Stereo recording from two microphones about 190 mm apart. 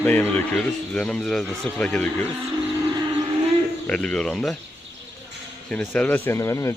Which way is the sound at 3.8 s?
5° left (ahead or behind).